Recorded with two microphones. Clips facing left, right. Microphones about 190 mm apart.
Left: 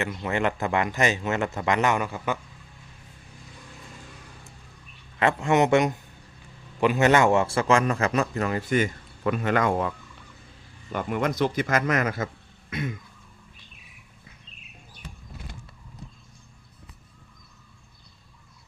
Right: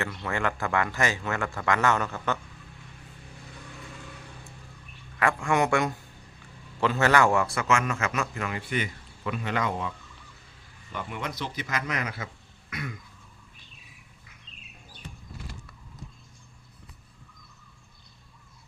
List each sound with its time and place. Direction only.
0.0 s speech: 20° left (ahead or behind)
5.2 s a man's voice: 20° left (ahead or behind); by 9.9 s 50° left (ahead or behind)
10.9 s speech: 50° left (ahead or behind)
12.7 s speech: 25° left (ahead or behind)